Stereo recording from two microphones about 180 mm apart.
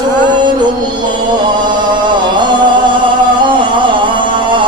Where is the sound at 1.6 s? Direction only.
25° right (ahead or behind).